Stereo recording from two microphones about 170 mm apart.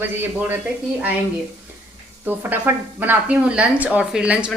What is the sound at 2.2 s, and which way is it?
Speech, 10° right (ahead or behind).